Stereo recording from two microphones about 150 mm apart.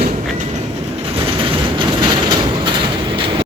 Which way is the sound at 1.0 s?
35° right (ahead or behind).